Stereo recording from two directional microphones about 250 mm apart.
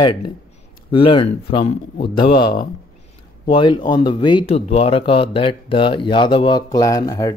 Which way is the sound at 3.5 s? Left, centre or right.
Centre.